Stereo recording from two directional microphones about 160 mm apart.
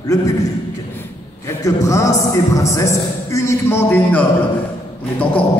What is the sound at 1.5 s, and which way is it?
A man's voice, 20° left (ahead or behind).